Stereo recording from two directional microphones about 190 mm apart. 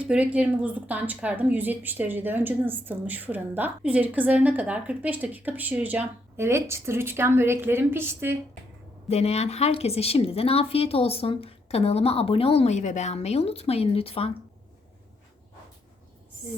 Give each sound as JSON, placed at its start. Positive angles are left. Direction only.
{"t": 0.0, "sound": "a woman's voice", "side_deg": -5}
{"t": 9.0, "sound": "speech", "side_deg": 35}